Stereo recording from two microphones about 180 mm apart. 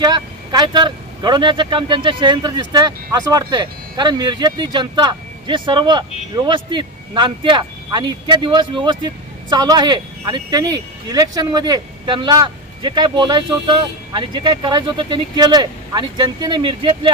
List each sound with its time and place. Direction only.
0.0 s speech: 25° right (ahead or behind)